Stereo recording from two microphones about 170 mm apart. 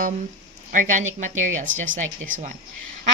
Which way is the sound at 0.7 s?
50° right (ahead or behind).